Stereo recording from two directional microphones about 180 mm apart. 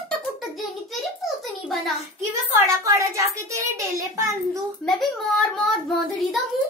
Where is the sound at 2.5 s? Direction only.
15° right (ahead or behind).